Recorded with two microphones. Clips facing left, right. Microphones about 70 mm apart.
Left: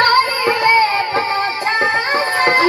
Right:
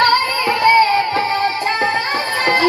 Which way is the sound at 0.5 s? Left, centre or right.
Left.